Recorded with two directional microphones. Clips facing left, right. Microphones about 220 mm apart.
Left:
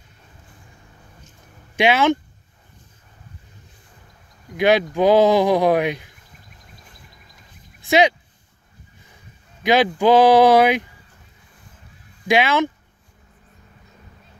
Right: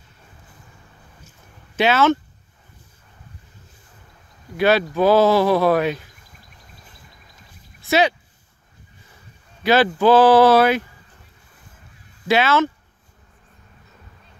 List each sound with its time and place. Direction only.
1.8 s speech: 15° left (ahead or behind)
4.6 s speech: 15° left (ahead or behind)
7.8 s a sound: 15° left (ahead or behind)
9.6 s speech: 15° left (ahead or behind)
12.3 s speech: 15° left (ahead or behind)